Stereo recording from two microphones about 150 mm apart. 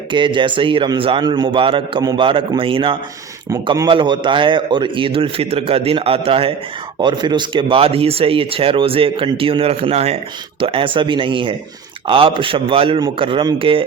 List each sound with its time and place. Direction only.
0.1 s speech: 30° right (ahead or behind)